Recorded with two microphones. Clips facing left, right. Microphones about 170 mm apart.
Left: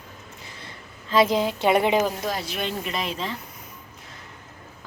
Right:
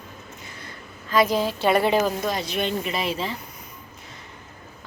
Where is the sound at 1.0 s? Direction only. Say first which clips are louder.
Left 1 dB; 25° left (ahead or behind); by 3.3 s 5° right (ahead or behind).